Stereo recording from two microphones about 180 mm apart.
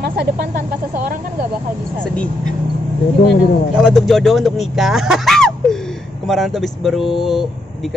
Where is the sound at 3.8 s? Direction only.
Centre (ahead or behind).